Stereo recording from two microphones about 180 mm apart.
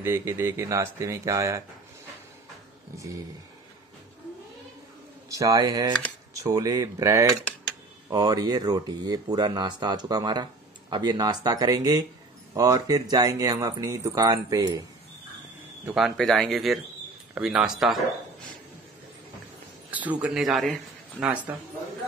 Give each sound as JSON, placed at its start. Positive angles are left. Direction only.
{"t": 0.0, "sound": "speech", "side_deg": -15}
{"t": 5.3, "sound": "speech", "side_deg": -20}
{"t": 15.8, "sound": "speech", "side_deg": -5}
{"t": 19.9, "sound": "speech", "side_deg": -10}